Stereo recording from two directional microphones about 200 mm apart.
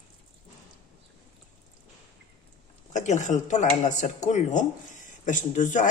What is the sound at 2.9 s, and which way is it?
Speech, 35° left (ahead or behind).